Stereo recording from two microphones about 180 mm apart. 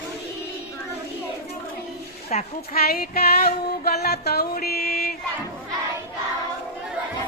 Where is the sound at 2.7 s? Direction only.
55° left (ahead or behind).